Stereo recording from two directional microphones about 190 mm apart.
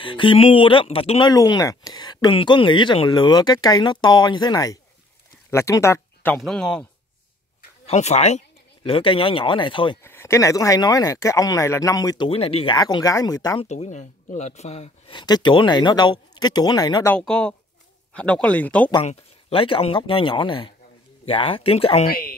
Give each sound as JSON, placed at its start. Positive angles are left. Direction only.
{"t": 0.0, "sound": "speech", "side_deg": 25}
{"t": 1.3, "sound": "speech", "side_deg": 20}
{"t": 7.8, "sound": "speech", "side_deg": 35}
{"t": 10.0, "sound": "speech", "side_deg": 15}
{"t": 12.3, "sound": "speech", "side_deg": 30}
{"t": 13.7, "sound": "speech", "side_deg": 35}
{"t": 17.1, "sound": "a woman's voice", "side_deg": 5}
{"t": 19.0, "sound": "speech", "side_deg": 30}
{"t": 22.0, "sound": "speech", "side_deg": 50}